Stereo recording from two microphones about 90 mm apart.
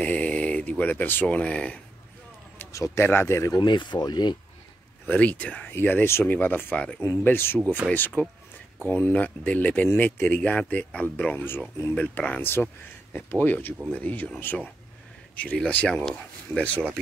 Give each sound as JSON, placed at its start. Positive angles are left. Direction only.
{"t": 0.0, "sound": "speech", "side_deg": 15}
{"t": 2.7, "sound": "speech", "side_deg": 35}
{"t": 3.0, "sound": "speech", "side_deg": 25}
{"t": 3.5, "sound": "speech", "side_deg": 60}
{"t": 5.0, "sound": "speech", "side_deg": 20}